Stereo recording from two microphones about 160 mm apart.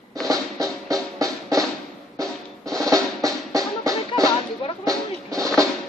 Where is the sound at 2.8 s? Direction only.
20° right (ahead or behind).